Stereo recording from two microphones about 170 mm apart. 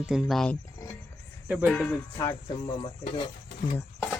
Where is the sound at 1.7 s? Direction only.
5° left (ahead or behind).